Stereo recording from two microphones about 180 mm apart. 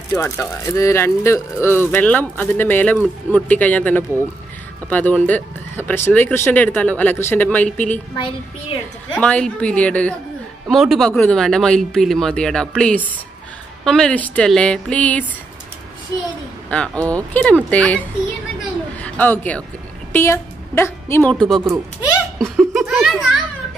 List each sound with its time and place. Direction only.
0.1 s speech: 15° left (ahead or behind)
8.2 s a woman's voice: 30° left (ahead or behind)
9.1 s speech: 5° left (ahead or behind)
16.7 s speech: 5° left (ahead or behind)
18.6 s a sound: 10° left (ahead or behind)
20.1 s a woman's voice: 10° left (ahead or behind)